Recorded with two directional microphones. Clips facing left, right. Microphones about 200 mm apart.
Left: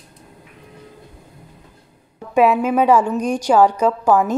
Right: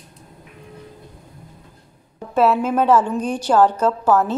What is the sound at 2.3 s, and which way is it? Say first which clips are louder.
A woman's voice: left 2 dB; 15° left (ahead or behind).